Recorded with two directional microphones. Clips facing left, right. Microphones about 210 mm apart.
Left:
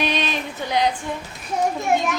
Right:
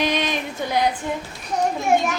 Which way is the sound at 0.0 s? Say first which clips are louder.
Right 1 dB; 15° right (ahead or behind).